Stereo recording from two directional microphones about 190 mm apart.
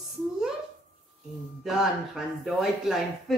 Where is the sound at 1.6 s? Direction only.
Centre (ahead or behind).